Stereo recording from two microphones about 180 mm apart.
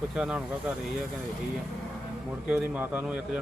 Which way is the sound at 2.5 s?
5° right (ahead or behind).